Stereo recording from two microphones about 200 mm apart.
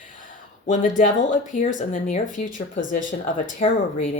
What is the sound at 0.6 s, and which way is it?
Speech, 40° left (ahead or behind).